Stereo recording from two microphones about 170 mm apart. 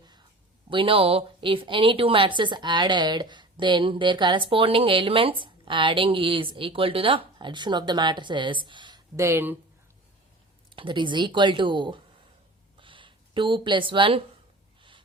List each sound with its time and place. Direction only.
0.7 s a woman's voice: 30° right (ahead or behind); by 9.6 s 15° right (ahead or behind)
10.8 s a woman's voice: 30° right (ahead or behind)
12.8 s a sound: 30° right (ahead or behind)